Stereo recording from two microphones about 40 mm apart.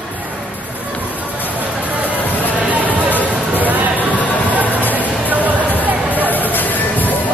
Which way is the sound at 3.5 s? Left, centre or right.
Right.